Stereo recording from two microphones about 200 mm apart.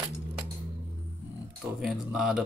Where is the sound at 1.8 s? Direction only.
Centre (ahead or behind).